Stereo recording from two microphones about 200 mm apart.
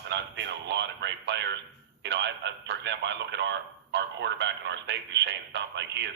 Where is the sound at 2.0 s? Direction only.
60° right (ahead or behind).